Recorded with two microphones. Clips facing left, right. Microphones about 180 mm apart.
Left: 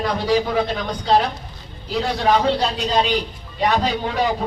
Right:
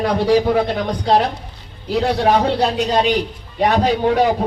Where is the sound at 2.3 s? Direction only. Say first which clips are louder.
Right 2 dB; 55° right (ahead or behind).